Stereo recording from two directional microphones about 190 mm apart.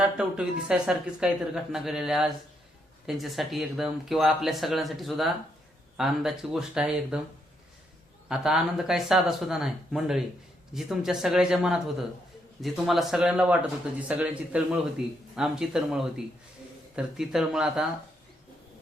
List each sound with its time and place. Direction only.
0.0 s speech: 5° right (ahead or behind)
8.3 s a man's voice: centre (ahead or behind)